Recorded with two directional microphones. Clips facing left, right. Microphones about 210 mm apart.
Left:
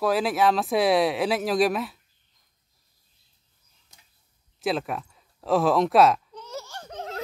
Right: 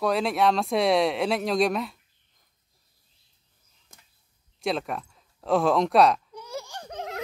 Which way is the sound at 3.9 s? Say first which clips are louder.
Right 3 dB; 50° right (ahead or behind).